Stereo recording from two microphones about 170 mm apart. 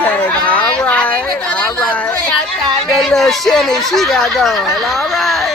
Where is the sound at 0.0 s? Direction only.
10° left (ahead or behind).